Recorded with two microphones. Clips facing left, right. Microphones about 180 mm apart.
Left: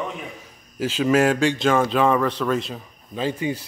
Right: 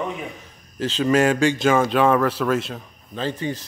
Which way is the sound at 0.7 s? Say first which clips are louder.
Even; 10° left (ahead or behind).